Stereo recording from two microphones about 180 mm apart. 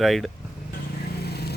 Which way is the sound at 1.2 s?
60° left (ahead or behind).